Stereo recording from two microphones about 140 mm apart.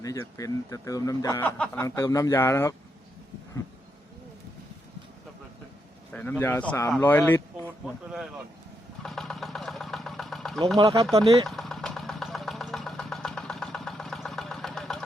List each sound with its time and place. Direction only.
0.0 s speech: 25° left (ahead or behind)
1.4 s a man's voice: 10° left (ahead or behind)
1.8 s speech: 20° left (ahead or behind)
6.1 s a man's voice: 10° left (ahead or behind)
9.0 s engine: 5° left (ahead or behind)
10.8 s speech: 25° right (ahead or behind)
11.4 s vehicle: centre (ahead or behind)